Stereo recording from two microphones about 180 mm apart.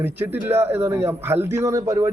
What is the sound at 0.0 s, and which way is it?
A man's voice, 10° right (ahead or behind).